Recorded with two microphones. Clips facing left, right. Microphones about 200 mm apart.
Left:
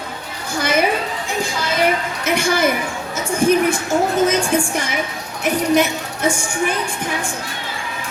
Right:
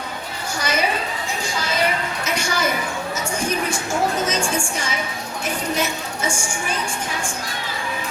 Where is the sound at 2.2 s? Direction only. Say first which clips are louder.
Left 8 dB; 55° left (ahead or behind).